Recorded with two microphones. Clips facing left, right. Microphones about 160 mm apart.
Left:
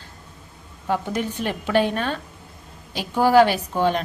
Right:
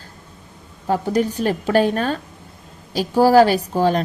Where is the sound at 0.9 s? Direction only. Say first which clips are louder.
Right 5 dB; 40° right (ahead or behind).